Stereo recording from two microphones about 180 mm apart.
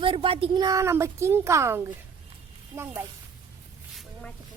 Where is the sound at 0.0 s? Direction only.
30° right (ahead or behind); by 3.0 s 15° right (ahead or behind).